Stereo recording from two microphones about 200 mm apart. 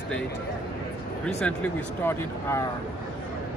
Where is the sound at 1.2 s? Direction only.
5° left (ahead or behind).